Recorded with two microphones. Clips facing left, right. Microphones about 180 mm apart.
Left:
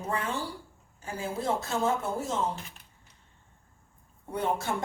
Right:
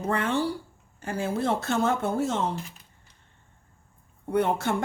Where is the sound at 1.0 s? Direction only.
70° right (ahead or behind).